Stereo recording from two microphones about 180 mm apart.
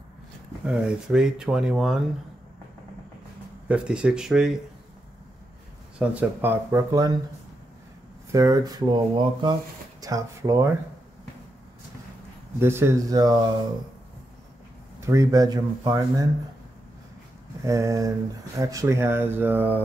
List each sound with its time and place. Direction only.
0.7 s speech: 5° right (ahead or behind)
3.6 s speech: 5° right (ahead or behind)
5.9 s speech: 10° right (ahead or behind)
8.3 s speech: 20° right (ahead or behind)
12.5 s speech: 15° right (ahead or behind)
15.0 s speech: 15° right (ahead or behind)
17.6 s speech: 15° right (ahead or behind)